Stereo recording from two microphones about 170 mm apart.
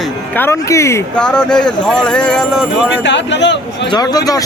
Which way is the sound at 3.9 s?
20° left (ahead or behind).